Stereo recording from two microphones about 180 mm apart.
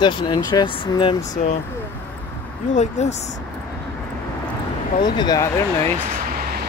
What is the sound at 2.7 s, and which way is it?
Speech, 40° left (ahead or behind).